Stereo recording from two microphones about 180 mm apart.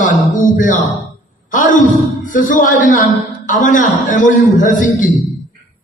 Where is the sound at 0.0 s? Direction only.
45° left (ahead or behind).